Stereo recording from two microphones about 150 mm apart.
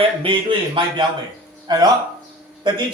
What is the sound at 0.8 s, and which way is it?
Speech, 35° right (ahead or behind).